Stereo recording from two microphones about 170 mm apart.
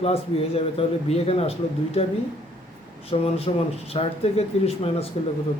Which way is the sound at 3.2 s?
35° left (ahead or behind).